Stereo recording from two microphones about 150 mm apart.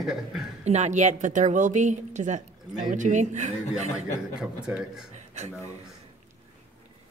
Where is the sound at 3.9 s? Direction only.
5° right (ahead or behind).